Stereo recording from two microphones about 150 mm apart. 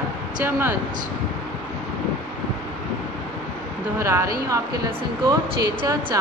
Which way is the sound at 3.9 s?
20° right (ahead or behind).